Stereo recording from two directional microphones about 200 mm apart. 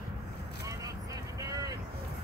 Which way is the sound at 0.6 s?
15° right (ahead or behind).